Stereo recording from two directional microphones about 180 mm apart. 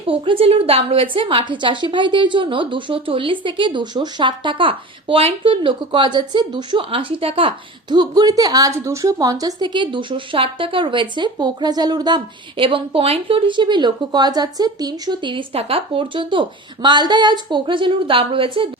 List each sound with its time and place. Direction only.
0.0 s speech: 30° right (ahead or behind)